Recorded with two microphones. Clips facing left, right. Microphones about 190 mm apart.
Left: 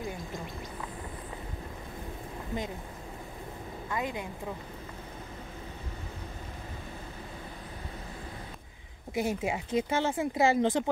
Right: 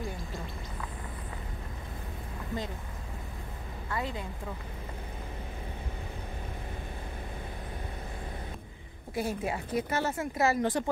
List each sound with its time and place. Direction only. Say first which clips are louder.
3.9 s speech: left 1 dB; 15° left (ahead or behind)
9.1 s speech: left 2 dB; 15° left (ahead or behind)